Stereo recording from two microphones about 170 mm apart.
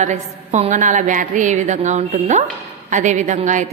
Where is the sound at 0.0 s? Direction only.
45° right (ahead or behind).